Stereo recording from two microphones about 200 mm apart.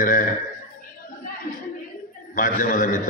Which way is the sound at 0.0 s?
40° left (ahead or behind).